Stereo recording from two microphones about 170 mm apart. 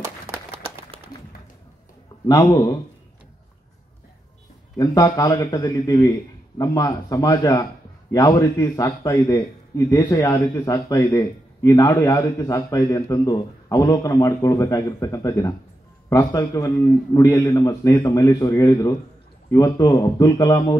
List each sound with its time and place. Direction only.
2.2 s a man's voice: 25° left (ahead or behind)
4.7 s a man's voice: 20° left (ahead or behind)